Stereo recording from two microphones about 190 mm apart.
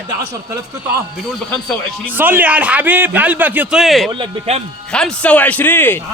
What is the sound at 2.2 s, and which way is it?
A man's voice, 10° right (ahead or behind).